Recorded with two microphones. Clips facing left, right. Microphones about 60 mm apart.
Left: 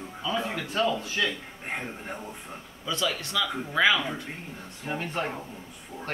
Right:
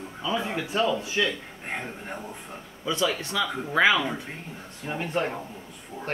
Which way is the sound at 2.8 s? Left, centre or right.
Right.